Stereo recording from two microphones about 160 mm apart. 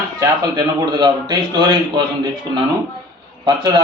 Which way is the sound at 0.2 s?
20° right (ahead or behind).